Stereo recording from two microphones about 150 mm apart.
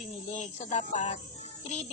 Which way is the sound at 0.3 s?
50° left (ahead or behind).